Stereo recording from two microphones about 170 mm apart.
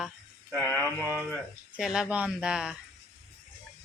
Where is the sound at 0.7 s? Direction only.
15° left (ahead or behind).